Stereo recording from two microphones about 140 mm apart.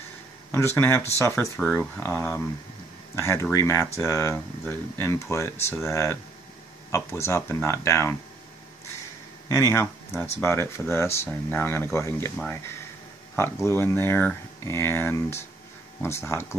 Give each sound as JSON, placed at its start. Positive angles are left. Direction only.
{"t": 0.5, "sound": "speech", "side_deg": 15}
{"t": 1.4, "sound": "speech", "side_deg": 10}
{"t": 9.5, "sound": "speech", "side_deg": 20}